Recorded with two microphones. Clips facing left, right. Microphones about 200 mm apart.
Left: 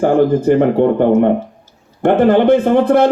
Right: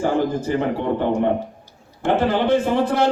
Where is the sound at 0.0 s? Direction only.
55° left (ahead or behind).